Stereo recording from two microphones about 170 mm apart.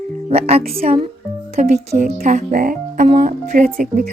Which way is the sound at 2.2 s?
45° right (ahead or behind).